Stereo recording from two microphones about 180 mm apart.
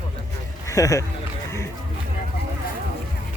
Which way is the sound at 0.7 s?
15° left (ahead or behind).